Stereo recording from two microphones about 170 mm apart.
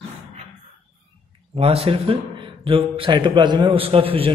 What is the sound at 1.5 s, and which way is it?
A man's voice, 35° right (ahead or behind).